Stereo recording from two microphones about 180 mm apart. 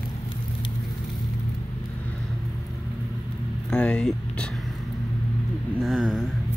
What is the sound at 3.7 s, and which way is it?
Vehicle, 5° left (ahead or behind).